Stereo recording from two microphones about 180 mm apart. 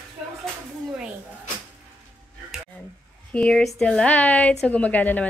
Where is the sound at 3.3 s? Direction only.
5° left (ahead or behind).